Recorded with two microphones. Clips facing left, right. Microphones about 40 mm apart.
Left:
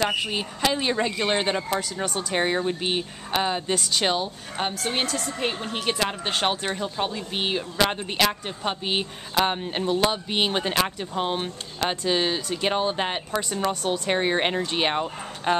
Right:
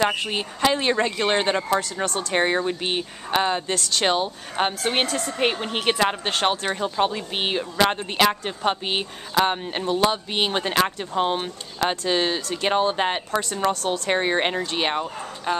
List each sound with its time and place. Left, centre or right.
0.3 s a woman's voice: centre
3.7 s speech: centre
4.0 s a woman's voice: centre
4.6 s speech: right
5.1 s speech: right
6.2 s speech: centre
6.8 s a woman's voice: centre
15.5 s speech: left